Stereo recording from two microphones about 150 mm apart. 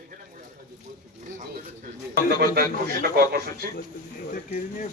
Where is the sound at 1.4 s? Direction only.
55° right (ahead or behind); by 2.5 s 75° right (ahead or behind).